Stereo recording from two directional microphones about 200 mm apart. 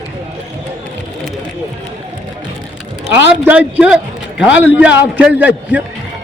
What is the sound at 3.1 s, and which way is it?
A man's voice, 10° right (ahead or behind).